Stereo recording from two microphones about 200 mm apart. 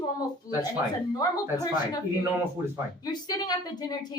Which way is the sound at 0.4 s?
15° left (ahead or behind).